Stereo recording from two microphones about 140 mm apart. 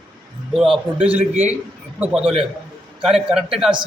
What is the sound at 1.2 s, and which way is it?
Speech, 50° right (ahead or behind).